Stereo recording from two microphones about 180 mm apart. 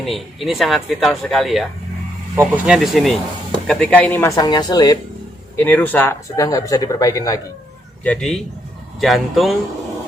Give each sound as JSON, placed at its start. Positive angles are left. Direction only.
{"t": 0.0, "sound": "speech", "side_deg": 0}
{"t": 4.4, "sound": "speech", "side_deg": 25}
{"t": 5.5, "sound": "speech", "side_deg": 10}
{"t": 8.0, "sound": "speech", "side_deg": 5}